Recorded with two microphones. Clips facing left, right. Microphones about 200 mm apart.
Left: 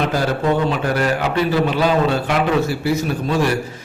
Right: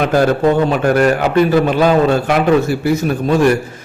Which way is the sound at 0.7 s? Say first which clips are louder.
Right 6 dB; 50° right (ahead or behind).